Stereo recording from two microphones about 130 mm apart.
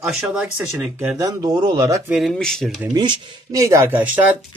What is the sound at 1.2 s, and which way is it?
Speech, 30° right (ahead or behind).